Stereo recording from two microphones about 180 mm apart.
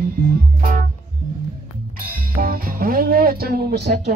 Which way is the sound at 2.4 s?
55° right (ahead or behind).